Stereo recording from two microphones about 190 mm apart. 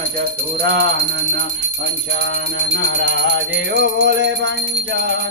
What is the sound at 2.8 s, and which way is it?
Music, 70° right (ahead or behind).